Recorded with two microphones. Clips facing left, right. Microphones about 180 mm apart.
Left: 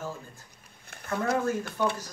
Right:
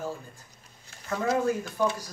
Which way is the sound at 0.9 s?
60° left (ahead or behind).